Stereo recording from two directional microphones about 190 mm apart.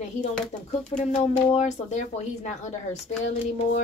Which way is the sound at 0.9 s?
35° left (ahead or behind).